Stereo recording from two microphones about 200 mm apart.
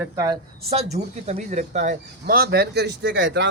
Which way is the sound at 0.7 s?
30° right (ahead or behind).